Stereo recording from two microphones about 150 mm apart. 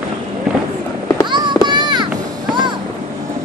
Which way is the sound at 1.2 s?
30° right (ahead or behind).